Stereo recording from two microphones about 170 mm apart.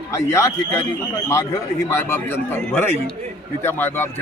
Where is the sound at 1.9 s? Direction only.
15° left (ahead or behind).